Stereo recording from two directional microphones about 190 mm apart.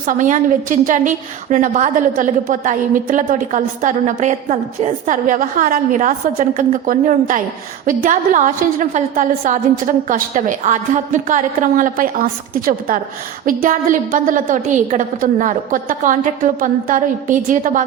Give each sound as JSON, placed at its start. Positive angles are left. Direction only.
{"t": 0.0, "sound": "a woman's voice", "side_deg": -45}